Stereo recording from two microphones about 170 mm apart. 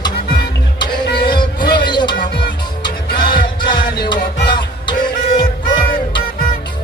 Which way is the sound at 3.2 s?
25° left (ahead or behind).